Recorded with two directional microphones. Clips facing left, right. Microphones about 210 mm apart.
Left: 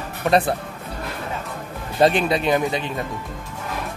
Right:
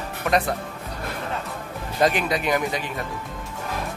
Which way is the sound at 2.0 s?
30° left (ahead or behind).